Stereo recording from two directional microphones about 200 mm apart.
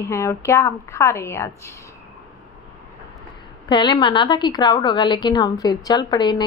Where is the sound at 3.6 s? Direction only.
20° left (ahead or behind).